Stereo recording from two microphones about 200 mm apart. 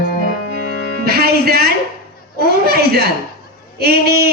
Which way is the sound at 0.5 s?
50° right (ahead or behind).